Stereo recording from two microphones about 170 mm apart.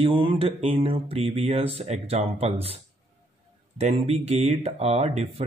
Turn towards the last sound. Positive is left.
turn(degrees=-40)  # may be behind; listen again after turning